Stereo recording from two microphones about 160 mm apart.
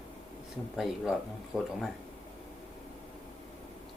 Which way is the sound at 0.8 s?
Centre (ahead or behind).